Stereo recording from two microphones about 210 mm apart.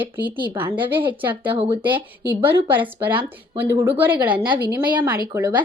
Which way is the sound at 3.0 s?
10° right (ahead or behind).